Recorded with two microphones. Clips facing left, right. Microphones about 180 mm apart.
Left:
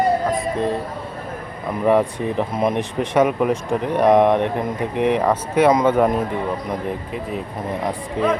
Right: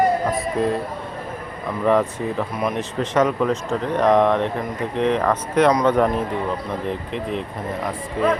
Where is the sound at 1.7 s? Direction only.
15° left (ahead or behind).